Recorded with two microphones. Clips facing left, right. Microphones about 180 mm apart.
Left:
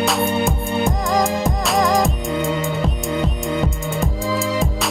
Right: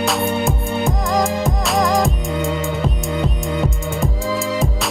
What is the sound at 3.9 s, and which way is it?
Music, centre (ahead or behind).